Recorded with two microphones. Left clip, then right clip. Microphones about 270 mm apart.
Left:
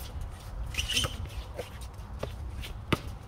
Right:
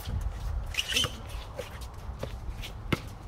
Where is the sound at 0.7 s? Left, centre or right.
Centre.